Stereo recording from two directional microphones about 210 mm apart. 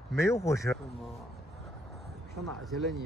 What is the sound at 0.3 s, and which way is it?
Speech, 15° left (ahead or behind).